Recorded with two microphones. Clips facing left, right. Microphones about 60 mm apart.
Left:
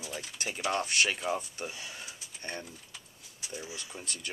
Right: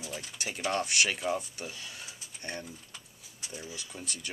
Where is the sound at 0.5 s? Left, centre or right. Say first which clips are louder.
Even; centre.